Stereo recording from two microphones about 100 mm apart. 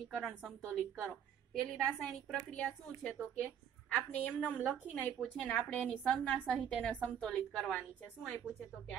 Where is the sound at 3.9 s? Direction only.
15° left (ahead or behind).